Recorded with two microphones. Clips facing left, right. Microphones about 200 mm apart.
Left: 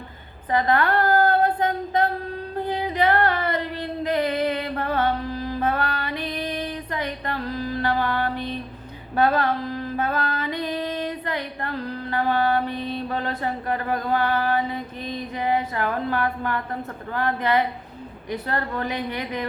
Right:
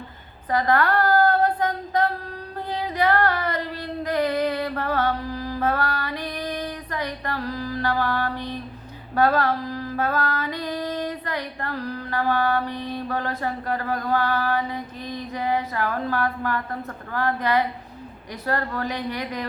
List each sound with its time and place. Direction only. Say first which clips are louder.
0.5 s a sound: even; 25° left (ahead or behind)
2.6 s female singing: left 2 dB; 20° left (ahead or behind)
17.2 s a woman's voice: even; 20° left (ahead or behind)